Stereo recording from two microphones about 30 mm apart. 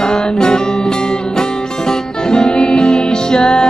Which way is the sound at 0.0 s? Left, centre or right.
Left.